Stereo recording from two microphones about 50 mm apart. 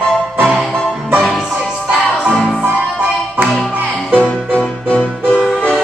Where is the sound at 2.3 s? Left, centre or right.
Centre.